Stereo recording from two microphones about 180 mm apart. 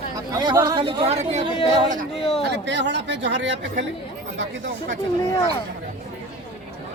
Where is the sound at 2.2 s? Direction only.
35° left (ahead or behind).